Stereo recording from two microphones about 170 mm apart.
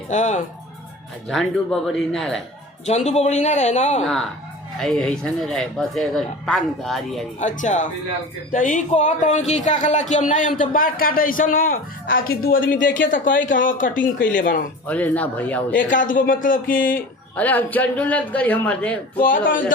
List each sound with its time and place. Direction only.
0.1 s speech: 45° left (ahead or behind)
1.3 s speech: 5° left (ahead or behind)
3.1 s a man's voice: 40° left (ahead or behind)
4.0 s speech: 5° left (ahead or behind)
7.3 s a man's voice: 45° left (ahead or behind)
14.8 s a man's voice: 10° left (ahead or behind)
15.8 s speech: 50° left (ahead or behind)
17.3 s a man's voice: 10° left (ahead or behind)
19.2 s speech: 50° left (ahead or behind)